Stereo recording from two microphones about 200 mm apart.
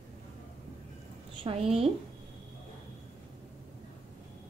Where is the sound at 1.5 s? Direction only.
25° right (ahead or behind).